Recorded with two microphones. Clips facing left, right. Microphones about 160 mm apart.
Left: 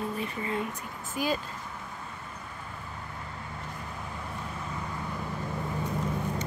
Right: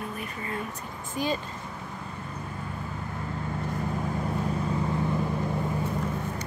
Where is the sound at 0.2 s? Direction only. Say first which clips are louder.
Left 2 dB; 20° left (ahead or behind).